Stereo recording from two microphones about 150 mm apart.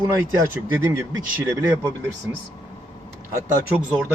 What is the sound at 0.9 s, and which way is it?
Speech, 20° right (ahead or behind).